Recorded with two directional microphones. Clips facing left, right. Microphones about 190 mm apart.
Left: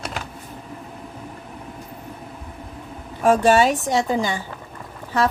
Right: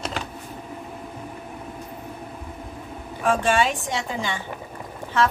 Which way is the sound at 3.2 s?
40° left (ahead or behind).